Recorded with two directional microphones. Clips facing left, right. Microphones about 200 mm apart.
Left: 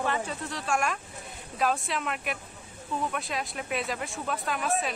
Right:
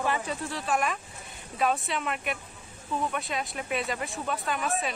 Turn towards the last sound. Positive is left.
turn(degrees=0)  # may be behind; listen again after turning